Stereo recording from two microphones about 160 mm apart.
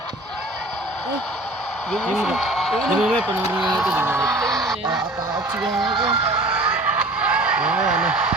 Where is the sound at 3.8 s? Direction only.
5° right (ahead or behind).